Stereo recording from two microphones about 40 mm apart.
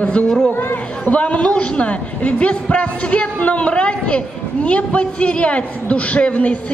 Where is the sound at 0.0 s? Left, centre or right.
Left.